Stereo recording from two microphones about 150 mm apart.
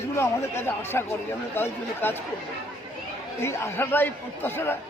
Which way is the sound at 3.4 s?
20° left (ahead or behind).